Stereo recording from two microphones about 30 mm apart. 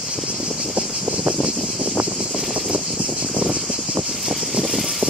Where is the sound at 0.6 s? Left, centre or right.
Right.